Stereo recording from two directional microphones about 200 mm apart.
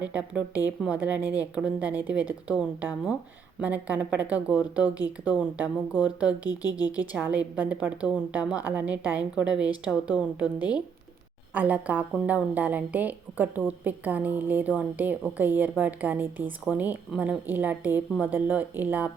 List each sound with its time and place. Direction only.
0.0 s a woman's voice: 5° right (ahead or behind)
6.4 s speech: 20° left (ahead or behind)
7.1 s a woman's voice: 10° right (ahead or behind)
11.5 s a woman's voice: 10° right (ahead or behind)